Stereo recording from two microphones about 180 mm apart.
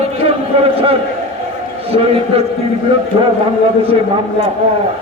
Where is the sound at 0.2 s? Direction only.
35° right (ahead or behind).